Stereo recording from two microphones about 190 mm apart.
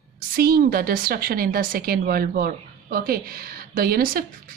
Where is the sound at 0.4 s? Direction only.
50° right (ahead or behind).